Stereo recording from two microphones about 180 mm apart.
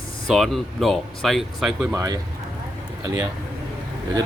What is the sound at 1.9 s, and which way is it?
Speech, 20° right (ahead or behind).